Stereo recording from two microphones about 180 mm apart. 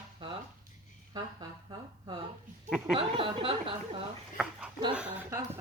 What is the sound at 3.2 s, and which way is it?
Speech, 30° right (ahead or behind).